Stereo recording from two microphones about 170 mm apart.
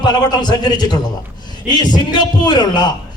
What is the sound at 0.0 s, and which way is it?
A man's voice, 25° left (ahead or behind).